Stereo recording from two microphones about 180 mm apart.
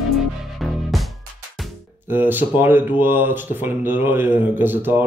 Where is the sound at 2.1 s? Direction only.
10° right (ahead or behind).